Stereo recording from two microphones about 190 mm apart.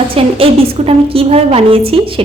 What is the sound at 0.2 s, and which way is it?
A woman's voice, 30° right (ahead or behind).